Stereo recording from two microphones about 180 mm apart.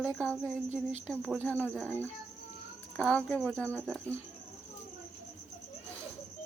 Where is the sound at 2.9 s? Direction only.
Centre (ahead or behind).